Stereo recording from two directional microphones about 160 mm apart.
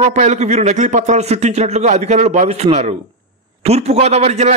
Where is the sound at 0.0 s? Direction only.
45° right (ahead or behind).